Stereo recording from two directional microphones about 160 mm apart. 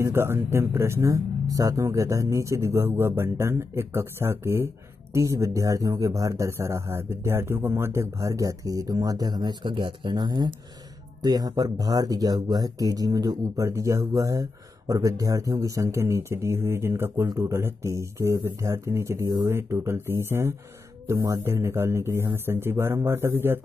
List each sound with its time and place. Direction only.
0.0 s speech: 15° right (ahead or behind)